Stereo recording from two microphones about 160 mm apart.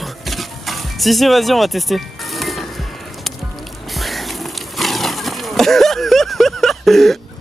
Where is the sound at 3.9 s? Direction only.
Centre (ahead or behind).